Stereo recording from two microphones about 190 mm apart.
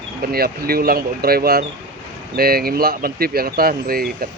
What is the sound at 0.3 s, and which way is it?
Speech, 55° right (ahead or behind).